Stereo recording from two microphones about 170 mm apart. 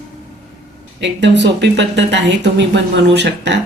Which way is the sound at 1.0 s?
90° right.